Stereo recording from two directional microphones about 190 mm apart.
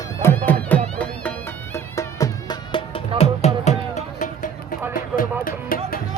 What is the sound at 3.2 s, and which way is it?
Music, 35° left (ahead or behind).